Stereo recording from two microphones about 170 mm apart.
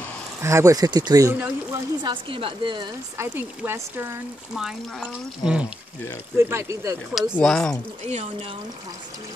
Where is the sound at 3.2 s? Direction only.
15° right (ahead or behind).